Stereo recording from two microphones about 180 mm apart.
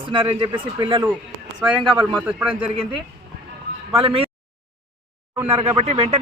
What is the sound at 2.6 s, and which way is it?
A man's voice, 30° right (ahead or behind).